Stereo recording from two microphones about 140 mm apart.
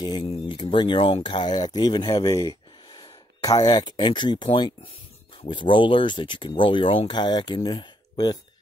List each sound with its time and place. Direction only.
0.0 s speech: 30° left (ahead or behind)